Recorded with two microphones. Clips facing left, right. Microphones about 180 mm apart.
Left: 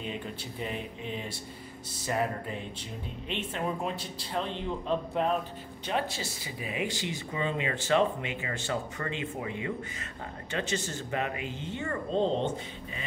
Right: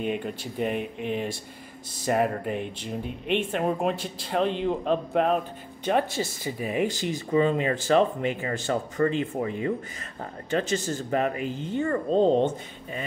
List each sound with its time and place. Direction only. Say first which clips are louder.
0.0 s speech: right 8 dB; 60° right (ahead or behind)
5.9 s speech: right 7 dB; 50° right (ahead or behind)